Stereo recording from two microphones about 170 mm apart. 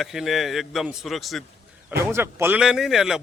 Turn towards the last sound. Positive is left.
turn(degrees=0)  # may be behind; listen again after turning